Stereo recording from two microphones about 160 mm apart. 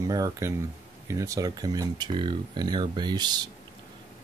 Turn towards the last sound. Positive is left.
turn(degrees=-25)  # may be behind; listen again after turning